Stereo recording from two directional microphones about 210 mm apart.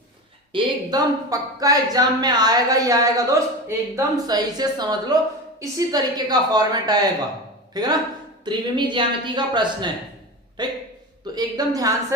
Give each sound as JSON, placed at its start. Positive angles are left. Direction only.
{"t": 0.5, "sound": "a woman's voice", "side_deg": -20}